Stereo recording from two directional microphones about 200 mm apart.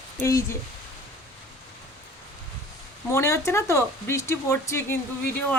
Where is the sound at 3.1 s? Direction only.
15° left (ahead or behind).